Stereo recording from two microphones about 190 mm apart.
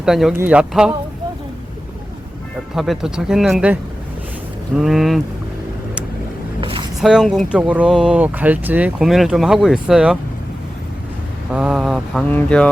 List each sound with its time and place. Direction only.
0.0 s speech: centre (ahead or behind)
2.7 s speech: centre (ahead or behind)
4.8 s speech: centre (ahead or behind)
6.6 s a sound: 25° right (ahead or behind)
7.0 s speech: centre (ahead or behind)
11.5 s speech: 5° right (ahead or behind)